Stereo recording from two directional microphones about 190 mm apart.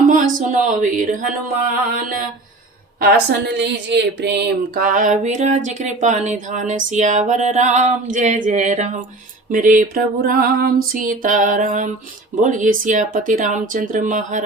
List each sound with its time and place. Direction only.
0.3 s speech: 45° right (ahead or behind)
3.0 s speech: 60° right (ahead or behind); by 14.4 s 40° right (ahead or behind)